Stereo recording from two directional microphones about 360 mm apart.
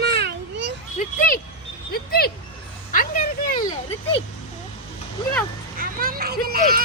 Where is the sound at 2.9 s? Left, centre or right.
Left.